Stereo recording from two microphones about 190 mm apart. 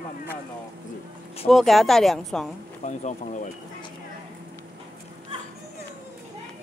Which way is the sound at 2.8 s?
40° left (ahead or behind).